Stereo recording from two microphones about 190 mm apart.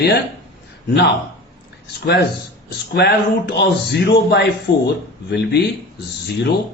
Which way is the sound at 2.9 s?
55° left (ahead or behind).